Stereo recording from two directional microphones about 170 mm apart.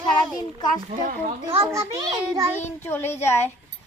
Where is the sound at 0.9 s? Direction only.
45° right (ahead or behind).